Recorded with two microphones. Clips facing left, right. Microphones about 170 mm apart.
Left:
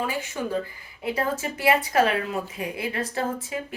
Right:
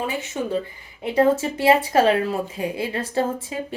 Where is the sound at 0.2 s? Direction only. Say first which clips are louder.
Right 3 dB; 25° right (ahead or behind).